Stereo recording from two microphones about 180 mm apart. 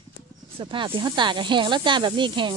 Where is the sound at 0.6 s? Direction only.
30° right (ahead or behind).